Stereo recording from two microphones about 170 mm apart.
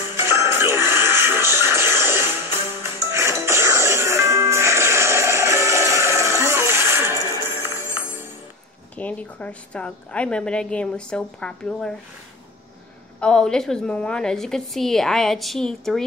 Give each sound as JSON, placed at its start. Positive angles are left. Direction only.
{"t": 0.3, "sound": "music", "side_deg": -15}
{"t": 8.9, "sound": "a woman's voice", "side_deg": 10}
{"t": 13.2, "sound": "a woman's voice", "side_deg": 5}